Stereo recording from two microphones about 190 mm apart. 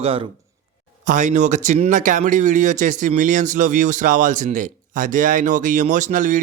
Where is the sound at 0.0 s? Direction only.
30° right (ahead or behind).